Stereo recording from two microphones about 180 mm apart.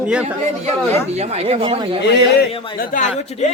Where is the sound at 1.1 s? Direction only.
35° right (ahead or behind).